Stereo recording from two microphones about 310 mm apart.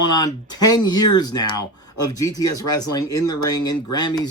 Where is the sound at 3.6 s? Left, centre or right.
Centre.